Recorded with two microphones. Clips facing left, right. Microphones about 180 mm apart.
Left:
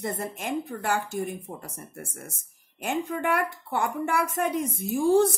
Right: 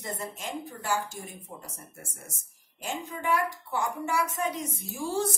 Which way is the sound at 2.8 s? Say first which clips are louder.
Left 4 dB; 60° left (ahead or behind).